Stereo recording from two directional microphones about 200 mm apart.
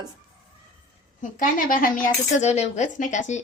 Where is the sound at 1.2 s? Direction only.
40° left (ahead or behind).